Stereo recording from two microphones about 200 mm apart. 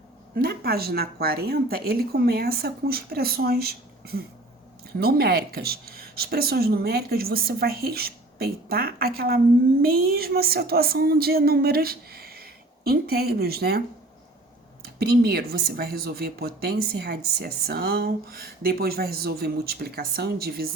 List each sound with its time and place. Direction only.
0.3 s speech: 50° right (ahead or behind)